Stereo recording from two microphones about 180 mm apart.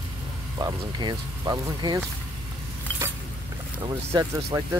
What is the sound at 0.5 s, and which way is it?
Speech, 25° right (ahead or behind).